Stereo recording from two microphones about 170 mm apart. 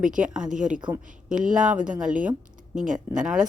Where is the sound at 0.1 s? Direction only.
5° right (ahead or behind).